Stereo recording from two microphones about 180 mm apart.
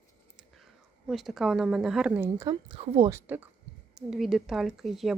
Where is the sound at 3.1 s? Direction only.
10° right (ahead or behind).